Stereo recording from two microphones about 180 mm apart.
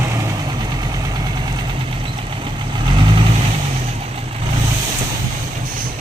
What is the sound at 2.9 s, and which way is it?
Vehicle, 25° right (ahead or behind).